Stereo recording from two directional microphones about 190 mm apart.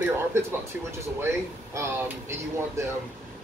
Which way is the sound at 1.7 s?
15° right (ahead or behind).